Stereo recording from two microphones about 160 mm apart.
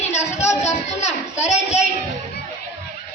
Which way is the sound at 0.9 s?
45° left (ahead or behind).